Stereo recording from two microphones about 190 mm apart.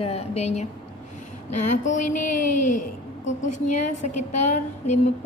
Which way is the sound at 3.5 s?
40° left (ahead or behind).